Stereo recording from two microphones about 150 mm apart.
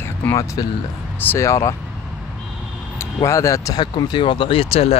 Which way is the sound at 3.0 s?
20° left (ahead or behind).